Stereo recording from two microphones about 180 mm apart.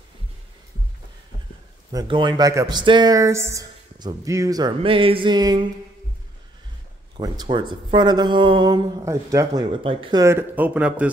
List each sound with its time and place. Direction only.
1.9 s speech: 25° right (ahead or behind)
7.2 s speech: 25° right (ahead or behind)
10.2 s speech: 10° right (ahead or behind)